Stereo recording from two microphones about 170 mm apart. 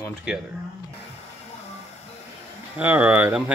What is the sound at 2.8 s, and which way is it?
Speech, 10° right (ahead or behind).